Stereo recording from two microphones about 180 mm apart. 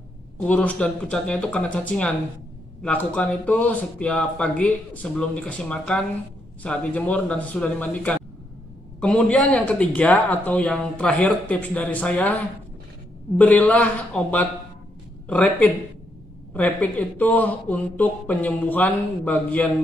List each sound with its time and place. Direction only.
0.4 s speech: 5° left (ahead or behind)
13.4 s speech: 10° left (ahead or behind)